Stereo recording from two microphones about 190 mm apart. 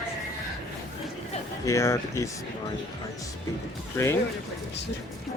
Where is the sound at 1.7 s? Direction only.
15° left (ahead or behind).